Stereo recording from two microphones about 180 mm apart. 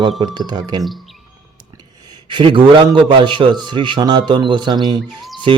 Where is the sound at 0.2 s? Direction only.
25° right (ahead or behind).